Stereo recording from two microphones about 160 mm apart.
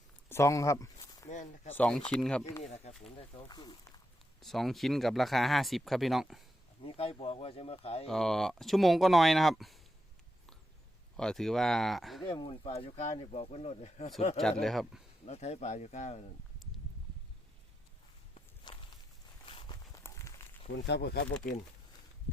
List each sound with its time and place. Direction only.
0.3 s speech: 20° left (ahead or behind)
1.3 s speech: 50° left (ahead or behind)
1.7 s speech: 5° left (ahead or behind)
2.8 s speech: 40° left (ahead or behind)
4.4 s speech: centre (ahead or behind)
6.8 s speech: 35° left (ahead or behind)
8.0 s speech: centre (ahead or behind)
11.2 s speech: 5° left (ahead or behind)
12.2 s speech: 35° left (ahead or behind)
14.6 s speech: centre (ahead or behind)
15.3 s speech: 45° left (ahead or behind)
18.7 s walk: 30° left (ahead or behind)
20.0 s a sound: 20° left (ahead or behind)
20.7 s speech: 90° left